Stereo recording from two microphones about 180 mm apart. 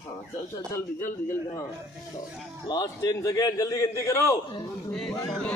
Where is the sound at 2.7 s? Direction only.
20° left (ahead or behind).